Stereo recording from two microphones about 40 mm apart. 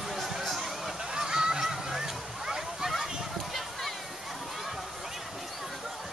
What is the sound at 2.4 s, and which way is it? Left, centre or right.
Splash, centre.